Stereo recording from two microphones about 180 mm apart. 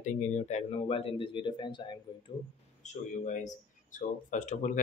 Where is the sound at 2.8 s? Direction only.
40° left (ahead or behind).